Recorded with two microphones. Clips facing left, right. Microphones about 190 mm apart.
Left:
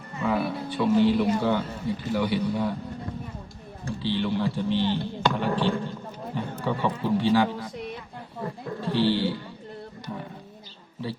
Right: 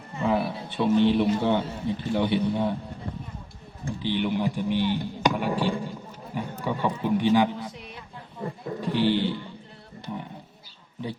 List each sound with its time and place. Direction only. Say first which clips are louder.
0.2 s speech: right 1 dB; 25° right (ahead or behind)
3.8 s speech: even; 20° right (ahead or behind)
8.8 s speech: even; 15° right (ahead or behind)